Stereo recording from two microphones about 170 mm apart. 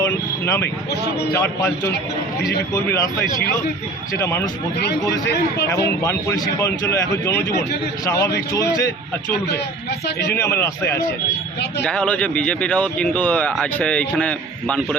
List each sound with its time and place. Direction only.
0.0 s speech: 15° left (ahead or behind)
6.0 s speech: 15° left (ahead or behind)
10.3 s speech: 15° left (ahead or behind)